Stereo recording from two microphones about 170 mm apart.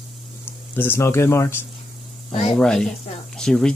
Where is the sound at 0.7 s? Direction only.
15° left (ahead or behind).